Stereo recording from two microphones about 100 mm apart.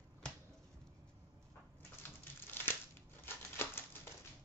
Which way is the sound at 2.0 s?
20° left (ahead or behind).